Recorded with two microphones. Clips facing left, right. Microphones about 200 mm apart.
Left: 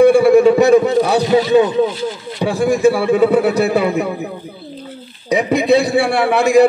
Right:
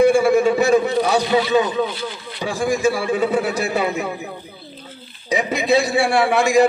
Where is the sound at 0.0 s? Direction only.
60° left (ahead or behind).